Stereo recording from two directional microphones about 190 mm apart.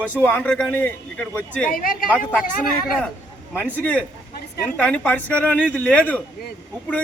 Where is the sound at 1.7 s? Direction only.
50° left (ahead or behind).